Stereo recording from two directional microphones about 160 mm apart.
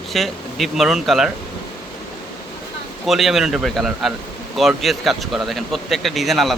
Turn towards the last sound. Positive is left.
turn(degrees=0)  # may be behind; listen again after turning